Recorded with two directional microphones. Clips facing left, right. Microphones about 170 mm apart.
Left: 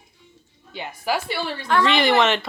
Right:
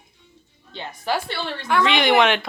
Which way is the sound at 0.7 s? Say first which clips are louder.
Even; 10° left (ahead or behind).